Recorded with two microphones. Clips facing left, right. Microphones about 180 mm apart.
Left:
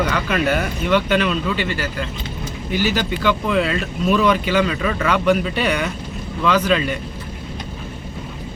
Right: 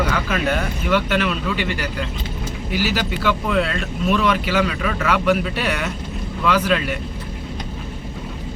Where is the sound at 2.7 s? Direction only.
5° right (ahead or behind).